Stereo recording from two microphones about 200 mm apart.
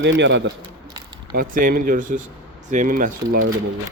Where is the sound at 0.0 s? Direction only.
65° right (ahead or behind).